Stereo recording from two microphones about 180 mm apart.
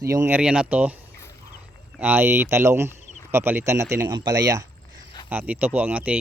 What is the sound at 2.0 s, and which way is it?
Speech, 10° right (ahead or behind).